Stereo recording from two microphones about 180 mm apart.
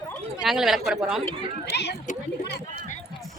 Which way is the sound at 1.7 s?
65° left (ahead or behind).